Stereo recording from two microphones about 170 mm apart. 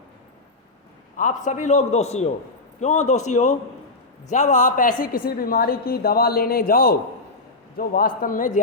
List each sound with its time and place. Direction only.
1.1 s a man's voice: 50° left (ahead or behind)